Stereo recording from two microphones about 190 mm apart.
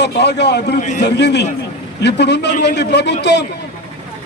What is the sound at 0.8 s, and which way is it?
Speech, 40° left (ahead or behind).